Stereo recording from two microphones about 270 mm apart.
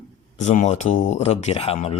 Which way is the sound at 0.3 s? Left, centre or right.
Left.